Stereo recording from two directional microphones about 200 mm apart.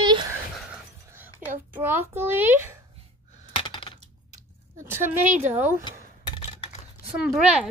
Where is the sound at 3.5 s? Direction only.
25° left (ahead or behind).